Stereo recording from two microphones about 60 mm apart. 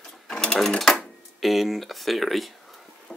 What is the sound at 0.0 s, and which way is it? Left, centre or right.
Sewing machine, centre.